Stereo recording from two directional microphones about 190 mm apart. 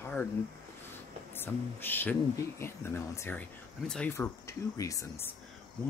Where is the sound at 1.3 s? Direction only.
10° left (ahead or behind).